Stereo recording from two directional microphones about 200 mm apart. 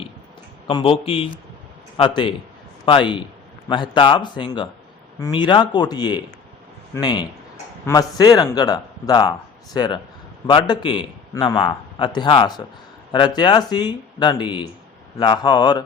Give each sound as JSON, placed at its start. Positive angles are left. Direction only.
{"t": 0.7, "sound": "a man's voice", "side_deg": 25}